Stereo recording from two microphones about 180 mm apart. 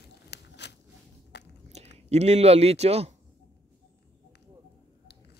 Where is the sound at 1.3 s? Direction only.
70° left (ahead or behind).